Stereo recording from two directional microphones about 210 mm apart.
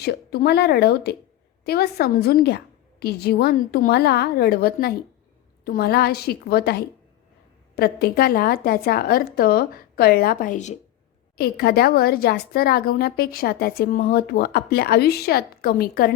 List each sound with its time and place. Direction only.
0.0 s a woman's voice: 50° left (ahead or behind)
11.3 s a woman's voice: 45° left (ahead or behind)